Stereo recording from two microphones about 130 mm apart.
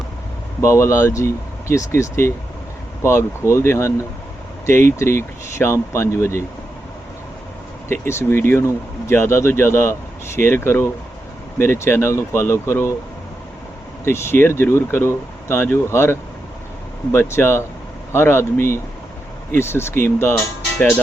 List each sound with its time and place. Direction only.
0.6 s speech: 25° left (ahead or behind)
7.9 s speech: 20° left (ahead or behind)
14.0 s speech: 20° left (ahead or behind)